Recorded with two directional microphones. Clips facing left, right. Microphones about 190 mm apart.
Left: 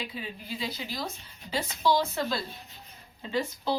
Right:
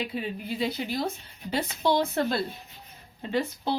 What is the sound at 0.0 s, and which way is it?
A woman's voice, 55° right (ahead or behind).